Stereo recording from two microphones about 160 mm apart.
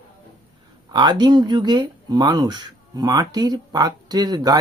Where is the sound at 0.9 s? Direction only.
25° right (ahead or behind).